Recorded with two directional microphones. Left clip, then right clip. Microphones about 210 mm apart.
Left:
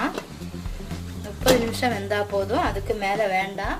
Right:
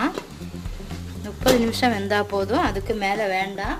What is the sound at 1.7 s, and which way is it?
A woman's voice, 50° right (ahead or behind).